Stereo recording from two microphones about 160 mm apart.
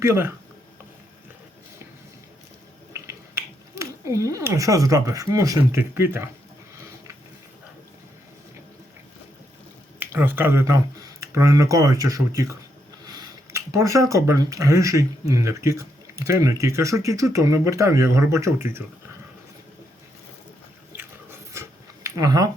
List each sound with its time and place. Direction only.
0.0 s speech: 15° right (ahead or behind)
2.9 s speech: 20° right (ahead or behind)
10.0 s speech: 15° right (ahead or behind)
20.9 s chewing: 15° right (ahead or behind)